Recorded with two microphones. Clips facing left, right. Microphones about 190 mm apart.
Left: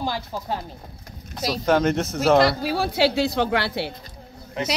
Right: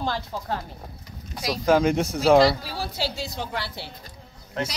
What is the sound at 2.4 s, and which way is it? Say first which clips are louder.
A woman's voice: left 1 dB; 65° left (ahead or behind).